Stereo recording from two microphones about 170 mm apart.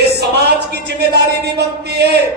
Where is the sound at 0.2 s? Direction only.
75° right (ahead or behind).